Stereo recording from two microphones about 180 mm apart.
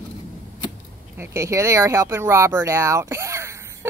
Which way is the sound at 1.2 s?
15° right (ahead or behind).